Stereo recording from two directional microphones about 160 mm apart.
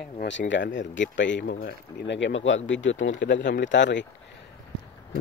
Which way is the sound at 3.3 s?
90° left.